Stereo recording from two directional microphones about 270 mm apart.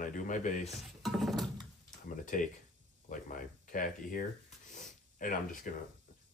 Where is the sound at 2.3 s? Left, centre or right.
Left.